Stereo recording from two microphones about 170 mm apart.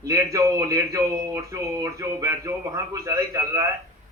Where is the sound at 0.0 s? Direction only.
20° right (ahead or behind).